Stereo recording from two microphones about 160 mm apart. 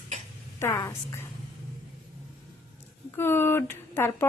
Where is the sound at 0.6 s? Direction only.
20° left (ahead or behind).